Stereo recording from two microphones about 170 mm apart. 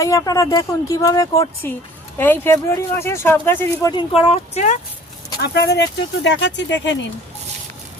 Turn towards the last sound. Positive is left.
turn(degrees=90)